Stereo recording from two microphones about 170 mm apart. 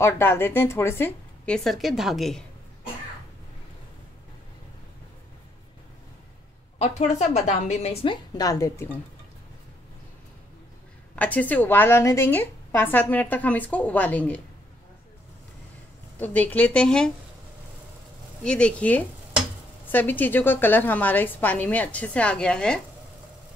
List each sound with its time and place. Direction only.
0.0 s a woman's voice: 15° left (ahead or behind)
6.8 s a woman's voice: 40° left (ahead or behind); by 8.8 s 20° left (ahead or behind)
11.1 s a woman's voice: 10° left (ahead or behind)
16.2 s a woman's voice: 10° left (ahead or behind)
18.4 s a woman's voice: 5° left (ahead or behind)